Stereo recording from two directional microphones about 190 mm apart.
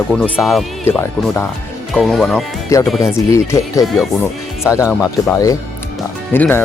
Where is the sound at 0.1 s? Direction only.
Centre (ahead or behind).